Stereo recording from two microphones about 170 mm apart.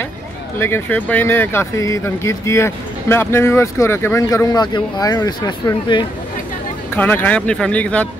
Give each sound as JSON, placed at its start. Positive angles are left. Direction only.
{"t": 0.6, "sound": "speech", "side_deg": 15}
{"t": 7.0, "sound": "speech", "side_deg": 10}